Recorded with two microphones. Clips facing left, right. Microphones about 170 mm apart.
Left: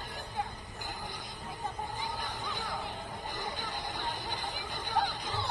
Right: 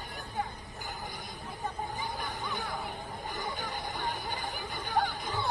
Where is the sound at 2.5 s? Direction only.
45° right (ahead or behind).